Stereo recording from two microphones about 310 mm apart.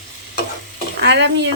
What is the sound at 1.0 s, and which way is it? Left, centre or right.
Speech, right.